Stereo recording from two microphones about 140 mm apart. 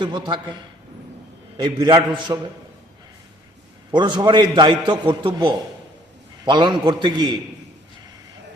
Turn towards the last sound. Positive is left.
turn(degrees=-30)  # may be behind; listen again after turning